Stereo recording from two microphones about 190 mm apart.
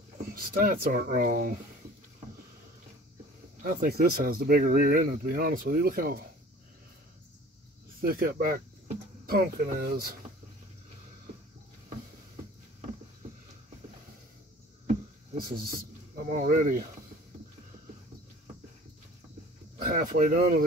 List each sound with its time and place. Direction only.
0.3 s speech: 50° right (ahead or behind)
3.6 s speech: 50° right (ahead or behind)
8.0 s speech: 50° right (ahead or behind)
15.3 s speech: 50° right (ahead or behind)
19.8 s speech: 50° right (ahead or behind)